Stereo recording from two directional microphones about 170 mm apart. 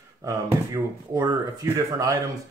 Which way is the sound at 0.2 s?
20° right (ahead or behind).